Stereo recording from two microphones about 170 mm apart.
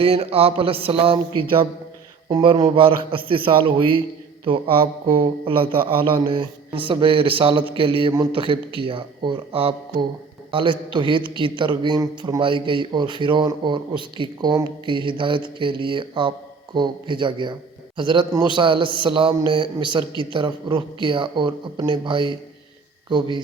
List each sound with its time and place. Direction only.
0.0 s a man's voice: 35° right (ahead or behind)